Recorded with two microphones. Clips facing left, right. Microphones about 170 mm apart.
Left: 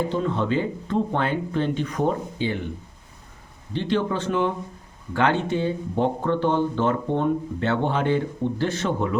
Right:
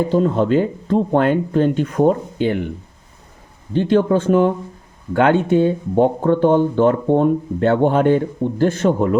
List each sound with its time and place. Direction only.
0.1 s speech: 40° right (ahead or behind)
3.7 s speech: 50° right (ahead or behind)